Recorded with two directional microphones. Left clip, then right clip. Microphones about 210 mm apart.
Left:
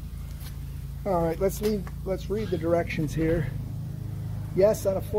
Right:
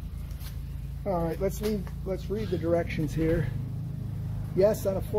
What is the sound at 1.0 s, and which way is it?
Speech, 60° left (ahead or behind).